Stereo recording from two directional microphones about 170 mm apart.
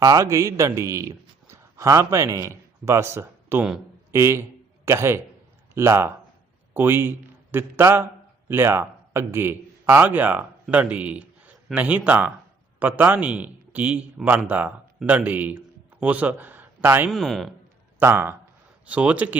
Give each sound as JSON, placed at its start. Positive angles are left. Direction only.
{"t": 0.0, "sound": "a man's voice", "side_deg": -20}
{"t": 17.1, "sound": "speech", "side_deg": 0}
{"t": 18.0, "sound": "a man's voice", "side_deg": -15}